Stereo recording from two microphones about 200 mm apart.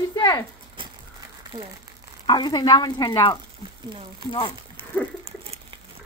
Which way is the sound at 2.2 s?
20° left (ahead or behind).